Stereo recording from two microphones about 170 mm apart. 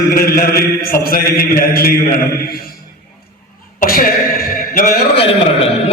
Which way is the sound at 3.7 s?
55° left (ahead or behind).